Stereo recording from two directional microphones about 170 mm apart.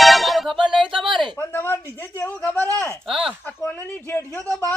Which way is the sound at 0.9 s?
30° right (ahead or behind).